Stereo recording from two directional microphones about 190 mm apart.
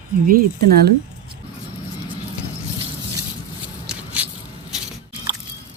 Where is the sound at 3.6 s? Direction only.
5° right (ahead or behind).